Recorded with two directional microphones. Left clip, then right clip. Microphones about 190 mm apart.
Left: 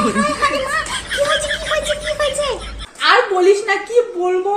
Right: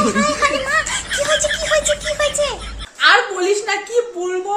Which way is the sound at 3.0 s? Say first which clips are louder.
Left 1 dB; 25° right (ahead or behind).